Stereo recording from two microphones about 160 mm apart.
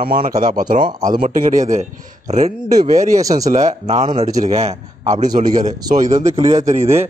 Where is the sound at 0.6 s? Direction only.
55° right (ahead or behind).